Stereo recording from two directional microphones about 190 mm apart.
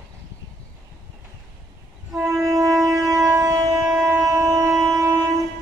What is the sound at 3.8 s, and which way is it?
Wind instrument, 10° right (ahead or behind).